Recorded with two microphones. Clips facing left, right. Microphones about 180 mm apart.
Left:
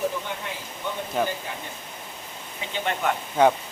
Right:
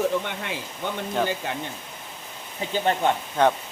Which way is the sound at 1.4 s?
80° right.